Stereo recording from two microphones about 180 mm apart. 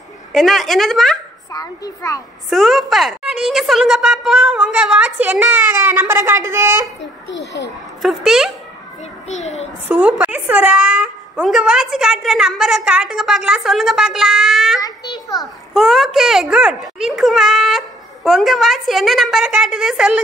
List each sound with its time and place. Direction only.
0.3 s a woman's voice: centre (ahead or behind)
1.5 s a child's voice: 20° left (ahead or behind)
2.5 s a woman's voice: centre (ahead or behind)
7.0 s a child's voice: 85° left
8.0 s a woman's voice: centre (ahead or behind)
9.3 s a child's voice: 40° left (ahead or behind)
9.8 s a woman's voice: 5° right (ahead or behind)
14.8 s a sound: 20° left (ahead or behind)
15.7 s a woman's voice: centre (ahead or behind)